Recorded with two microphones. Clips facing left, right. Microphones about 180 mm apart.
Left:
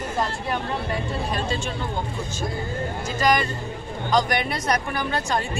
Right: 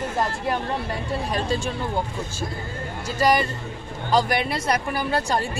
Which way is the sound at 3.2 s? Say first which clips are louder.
Right 2 dB; 35° right (ahead or behind).